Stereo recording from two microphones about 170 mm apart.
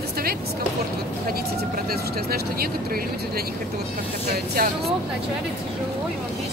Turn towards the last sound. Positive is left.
turn(degrees=-60)  # may be behind; listen again after turning